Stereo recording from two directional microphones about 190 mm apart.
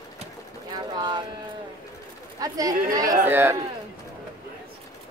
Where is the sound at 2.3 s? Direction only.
20° right (ahead or behind).